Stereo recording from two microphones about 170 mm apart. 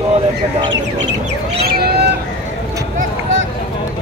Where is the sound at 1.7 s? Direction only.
65° right (ahead or behind).